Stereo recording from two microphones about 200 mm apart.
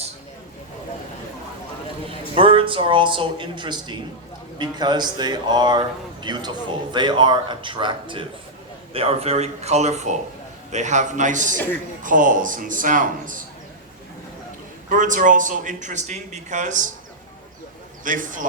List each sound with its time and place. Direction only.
2.0 s a man's voice: 25° right (ahead or behind)
11.5 s speech: 10° left (ahead or behind)
12.0 s a man's voice: 40° right (ahead or behind)
14.8 s a man's voice: 40° right (ahead or behind)
18.0 s a man's voice: 40° right (ahead or behind)